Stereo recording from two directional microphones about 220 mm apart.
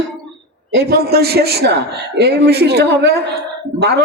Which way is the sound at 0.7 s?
45° right (ahead or behind).